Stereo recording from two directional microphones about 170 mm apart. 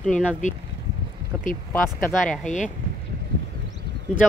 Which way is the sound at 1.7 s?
10° left (ahead or behind).